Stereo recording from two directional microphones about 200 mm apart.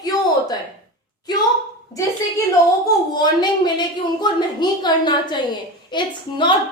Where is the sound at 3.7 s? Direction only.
20° left (ahead or behind).